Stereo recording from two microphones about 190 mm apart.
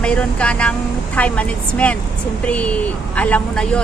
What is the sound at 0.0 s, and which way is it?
A woman's voice, 5° left (ahead or behind).